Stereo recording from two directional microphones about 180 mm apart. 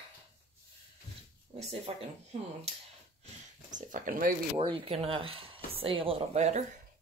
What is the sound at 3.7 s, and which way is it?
Speech, 45° right (ahead or behind).